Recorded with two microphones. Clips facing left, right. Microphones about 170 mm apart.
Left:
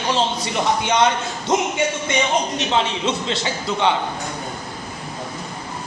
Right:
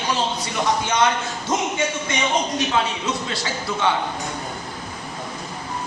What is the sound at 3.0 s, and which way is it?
Speech, 25° left (ahead or behind).